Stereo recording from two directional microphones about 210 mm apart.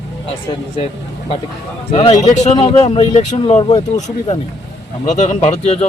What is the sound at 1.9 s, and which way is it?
Speech, 25° left (ahead or behind).